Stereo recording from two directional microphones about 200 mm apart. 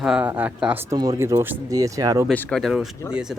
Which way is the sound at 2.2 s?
Centre (ahead or behind).